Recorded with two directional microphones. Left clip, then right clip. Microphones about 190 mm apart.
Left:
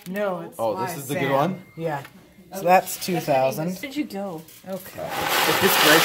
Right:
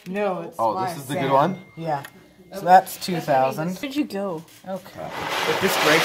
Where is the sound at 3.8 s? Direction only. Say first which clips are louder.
Right 3 dB; 35° right (ahead or behind).